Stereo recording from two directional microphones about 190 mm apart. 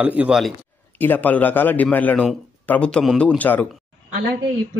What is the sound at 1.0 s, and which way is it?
A man's voice, 10° left (ahead or behind).